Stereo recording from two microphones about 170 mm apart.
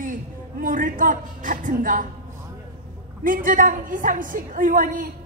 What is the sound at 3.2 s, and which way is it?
A woman's voice, 50° right (ahead or behind).